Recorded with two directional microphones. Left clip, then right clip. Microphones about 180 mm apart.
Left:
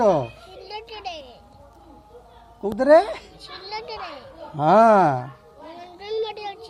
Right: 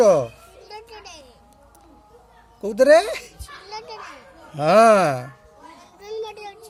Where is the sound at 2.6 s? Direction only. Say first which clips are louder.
Right 1 dB; 90° right.